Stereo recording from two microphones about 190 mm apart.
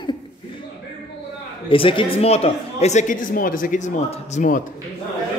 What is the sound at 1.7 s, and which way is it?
Speech, 25° left (ahead or behind).